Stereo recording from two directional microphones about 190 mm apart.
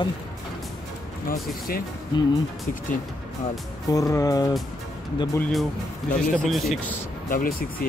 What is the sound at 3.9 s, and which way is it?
Speech, 20° left (ahead or behind).